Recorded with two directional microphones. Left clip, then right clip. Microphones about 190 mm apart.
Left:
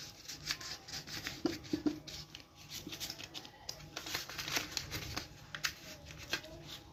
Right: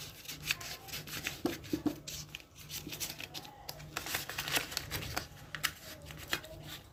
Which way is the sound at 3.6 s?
Centre (ahead or behind).